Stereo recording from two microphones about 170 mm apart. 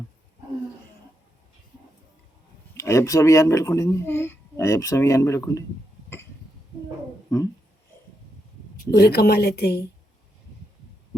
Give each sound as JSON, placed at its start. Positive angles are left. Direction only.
{"t": 2.7, "sound": "speech", "side_deg": 15}
{"t": 9.0, "sound": "a woman's voice", "side_deg": 70}